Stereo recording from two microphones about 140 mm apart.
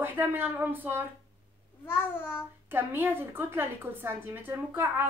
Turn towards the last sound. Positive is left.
turn(degrees=-15)  # may be behind; listen again after turning